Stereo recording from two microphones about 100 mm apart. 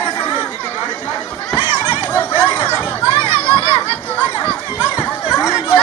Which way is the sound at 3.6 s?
70° left (ahead or behind).